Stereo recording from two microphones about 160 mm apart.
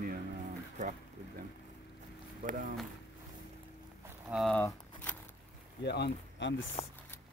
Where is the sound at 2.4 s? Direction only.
60° right (ahead or behind).